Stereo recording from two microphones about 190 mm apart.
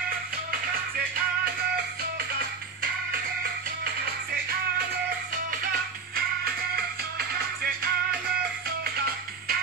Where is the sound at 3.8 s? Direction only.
50° right (ahead or behind).